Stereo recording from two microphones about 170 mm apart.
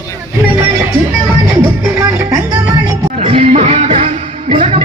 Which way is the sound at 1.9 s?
20° right (ahead or behind).